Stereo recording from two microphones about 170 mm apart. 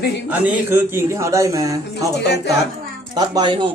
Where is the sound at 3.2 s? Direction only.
25° right (ahead or behind).